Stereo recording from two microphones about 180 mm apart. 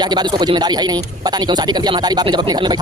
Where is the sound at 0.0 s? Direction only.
25° right (ahead or behind).